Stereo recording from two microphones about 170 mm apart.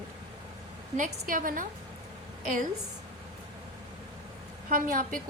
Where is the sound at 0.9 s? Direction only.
50° right (ahead or behind).